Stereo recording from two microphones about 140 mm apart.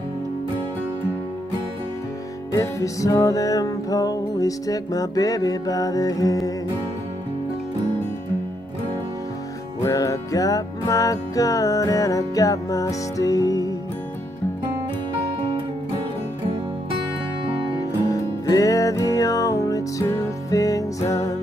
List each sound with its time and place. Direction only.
2.5 s music: 20° left (ahead or behind)
9.8 s music: 25° left (ahead or behind)
18.0 s music: 25° left (ahead or behind)